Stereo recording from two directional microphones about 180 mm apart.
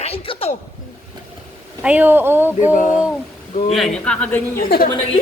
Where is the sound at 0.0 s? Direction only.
35° left (ahead or behind).